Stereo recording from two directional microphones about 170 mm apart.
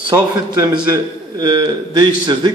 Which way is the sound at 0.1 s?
20° right (ahead or behind).